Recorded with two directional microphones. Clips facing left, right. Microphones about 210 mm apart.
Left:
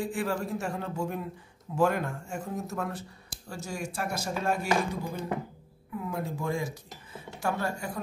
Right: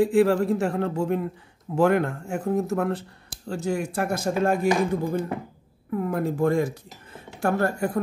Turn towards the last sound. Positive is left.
turn(degrees=-60)  # may be behind; listen again after turning